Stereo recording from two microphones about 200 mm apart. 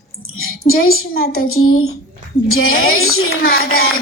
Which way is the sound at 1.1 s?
50° left (ahead or behind).